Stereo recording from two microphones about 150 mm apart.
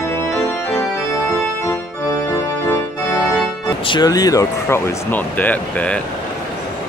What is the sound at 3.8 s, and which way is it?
Speech, 30° left (ahead or behind).